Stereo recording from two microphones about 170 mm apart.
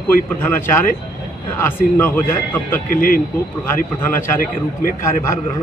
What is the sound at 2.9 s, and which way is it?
Speech, 55° left (ahead or behind).